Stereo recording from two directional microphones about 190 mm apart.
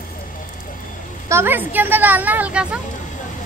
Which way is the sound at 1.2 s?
10° right (ahead or behind).